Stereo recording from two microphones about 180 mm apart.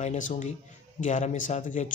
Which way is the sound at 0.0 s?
40° left (ahead or behind).